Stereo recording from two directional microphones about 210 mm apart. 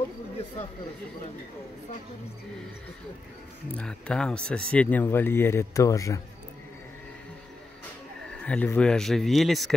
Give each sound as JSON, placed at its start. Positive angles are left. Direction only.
{"t": 3.7, "sound": "speech", "side_deg": 5}
{"t": 8.4, "sound": "speech", "side_deg": 5}